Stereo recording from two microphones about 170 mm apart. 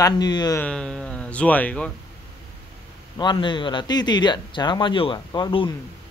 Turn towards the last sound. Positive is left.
turn(degrees=30)  # may be behind; listen again after turning